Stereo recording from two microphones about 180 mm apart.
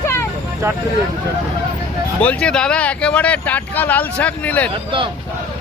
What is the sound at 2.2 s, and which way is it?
Speech, 5° left (ahead or behind).